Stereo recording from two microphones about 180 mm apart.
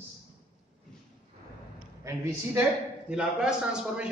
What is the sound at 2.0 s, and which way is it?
Speech, 15° right (ahead or behind).